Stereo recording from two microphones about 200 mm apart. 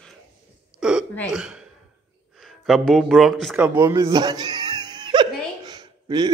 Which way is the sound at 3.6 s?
10° right (ahead or behind).